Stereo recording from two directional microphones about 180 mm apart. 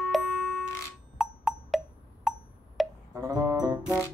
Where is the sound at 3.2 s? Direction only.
20° right (ahead or behind).